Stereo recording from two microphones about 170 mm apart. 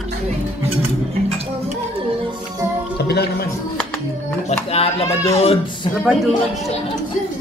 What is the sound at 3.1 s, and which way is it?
Music, 70° left (ahead or behind).